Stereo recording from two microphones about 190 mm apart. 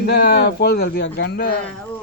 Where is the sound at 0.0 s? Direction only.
55° left (ahead or behind).